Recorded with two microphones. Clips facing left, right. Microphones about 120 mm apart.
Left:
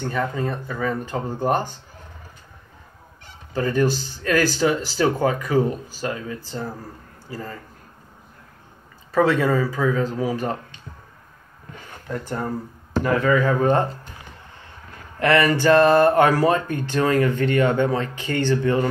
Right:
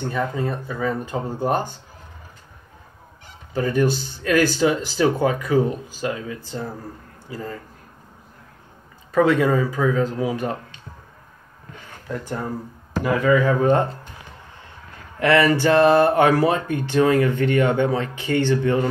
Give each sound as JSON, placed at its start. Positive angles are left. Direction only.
{"t": 0.0, "sound": "speech", "side_deg": -10}
{"t": 3.5, "sound": "speech", "side_deg": -15}
{"t": 9.4, "sound": "speech", "side_deg": -15}
{"t": 12.1, "sound": "speech", "side_deg": -5}
{"t": 15.1, "sound": "speech", "side_deg": -20}
{"t": 15.8, "sound": "speech", "side_deg": -5}